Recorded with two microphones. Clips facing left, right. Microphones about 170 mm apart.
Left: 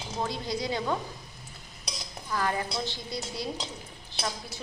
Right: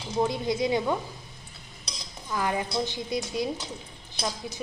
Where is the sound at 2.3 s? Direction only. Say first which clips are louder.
Right 2 dB; 15° right (ahead or behind).